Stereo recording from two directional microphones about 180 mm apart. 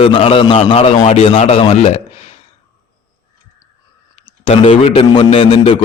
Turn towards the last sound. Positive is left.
turn(degrees=30)  # may be behind; listen again after turning